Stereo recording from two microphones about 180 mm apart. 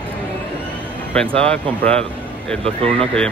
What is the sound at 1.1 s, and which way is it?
Speech, 5° left (ahead or behind).